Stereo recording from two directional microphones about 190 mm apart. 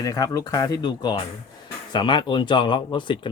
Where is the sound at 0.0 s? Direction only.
15° left (ahead or behind).